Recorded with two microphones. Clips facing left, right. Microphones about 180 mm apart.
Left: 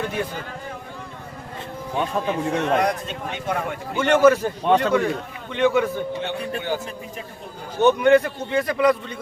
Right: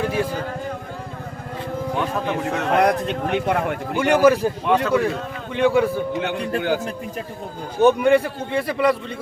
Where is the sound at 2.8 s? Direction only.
65° right (ahead or behind).